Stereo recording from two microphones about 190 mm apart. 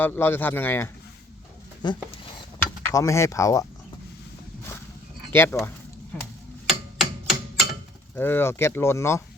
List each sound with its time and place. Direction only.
0.0 s speech: 10° left (ahead or behind)
1.8 s speech: 25° left (ahead or behind)
5.3 s speech: 10° left (ahead or behind)
6.7 s hammer: centre (ahead or behind)
8.1 s speech: 10° left (ahead or behind)